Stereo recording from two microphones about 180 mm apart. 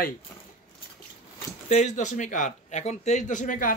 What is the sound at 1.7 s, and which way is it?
Speech, 40° left (ahead or behind).